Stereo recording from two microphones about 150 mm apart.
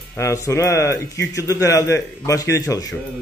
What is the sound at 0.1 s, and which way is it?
A man's voice, 20° left (ahead or behind).